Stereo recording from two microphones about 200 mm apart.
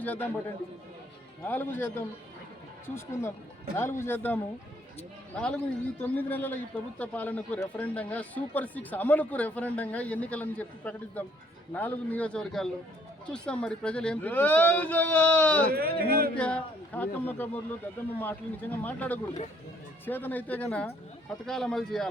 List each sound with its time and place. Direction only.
0.0 s a man's voice: 10° left (ahead or behind)
15.7 s a man's voice: 50° right (ahead or behind)
16.3 s speech: 5° left (ahead or behind)